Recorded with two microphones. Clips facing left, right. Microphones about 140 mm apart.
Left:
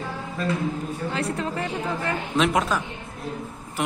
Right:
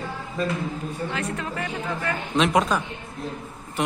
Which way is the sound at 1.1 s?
30° left (ahead or behind).